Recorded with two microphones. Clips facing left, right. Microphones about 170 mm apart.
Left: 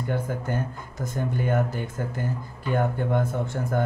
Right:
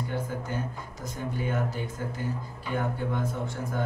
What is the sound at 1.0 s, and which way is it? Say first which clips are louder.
Speech: left 5 dB; 55° left (ahead or behind).